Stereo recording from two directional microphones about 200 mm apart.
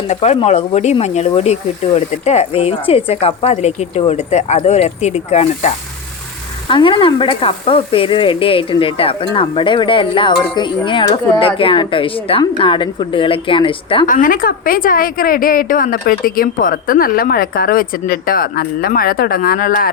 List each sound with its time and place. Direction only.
0.1 s speech: 35° left (ahead or behind)
6.7 s sizzle: 25° left (ahead or behind)
14.1 s a woman's voice: 45° left (ahead or behind)